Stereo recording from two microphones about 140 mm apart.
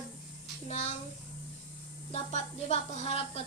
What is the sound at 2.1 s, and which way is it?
Speech, 50° left (ahead or behind).